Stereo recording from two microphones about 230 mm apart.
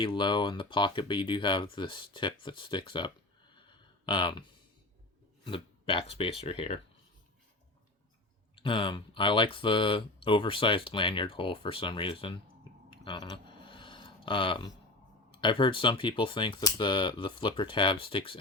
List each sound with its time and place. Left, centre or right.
0.0 s speech: left
3.5 s a sound: centre
5.5 s speech: left
8.5 s speech: left
12.9 s a sound: left
15.3 s speech: left